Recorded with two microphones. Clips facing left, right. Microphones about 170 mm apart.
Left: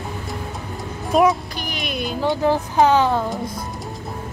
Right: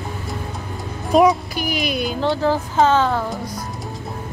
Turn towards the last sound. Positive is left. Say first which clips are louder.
# left 1 dB
turn(degrees=15)  # may be behind; listen again after turning